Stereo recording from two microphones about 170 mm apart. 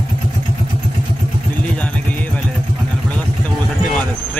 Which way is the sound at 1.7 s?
10° left (ahead or behind).